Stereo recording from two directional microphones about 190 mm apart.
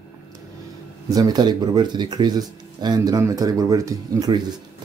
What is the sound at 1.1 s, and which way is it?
Speech, 20° right (ahead or behind).